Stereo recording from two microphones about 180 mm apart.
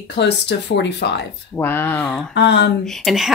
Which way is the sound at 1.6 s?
10° left (ahead or behind).